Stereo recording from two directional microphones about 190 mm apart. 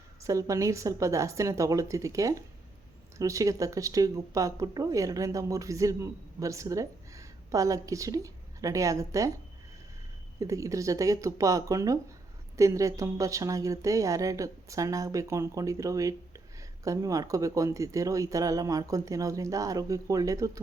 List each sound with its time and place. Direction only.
0.2 s speech: 15° right (ahead or behind)
10.4 s speech: 15° right (ahead or behind)